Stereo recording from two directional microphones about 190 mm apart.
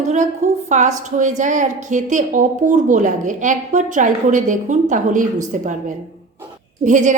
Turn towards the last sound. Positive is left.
turn(degrees=-40)  # may be behind; listen again after turning